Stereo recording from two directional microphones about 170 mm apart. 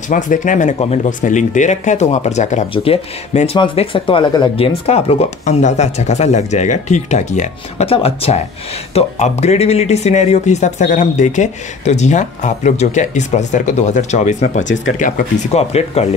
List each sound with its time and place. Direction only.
0.1 s speech: 50° left (ahead or behind)